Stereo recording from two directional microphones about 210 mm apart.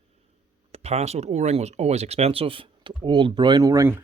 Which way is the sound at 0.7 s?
30° right (ahead or behind).